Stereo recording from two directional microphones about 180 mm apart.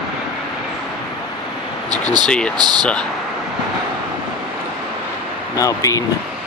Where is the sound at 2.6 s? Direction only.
25° right (ahead or behind).